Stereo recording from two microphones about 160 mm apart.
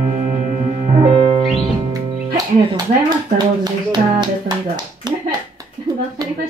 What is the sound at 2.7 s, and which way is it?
Music, 25° right (ahead or behind).